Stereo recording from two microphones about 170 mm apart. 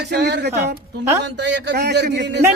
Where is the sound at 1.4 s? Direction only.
90° right.